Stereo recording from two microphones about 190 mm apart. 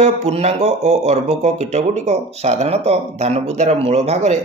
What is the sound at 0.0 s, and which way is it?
Speech, 35° right (ahead or behind).